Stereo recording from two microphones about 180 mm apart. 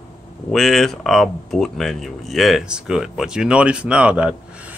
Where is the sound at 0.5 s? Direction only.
Centre (ahead or behind).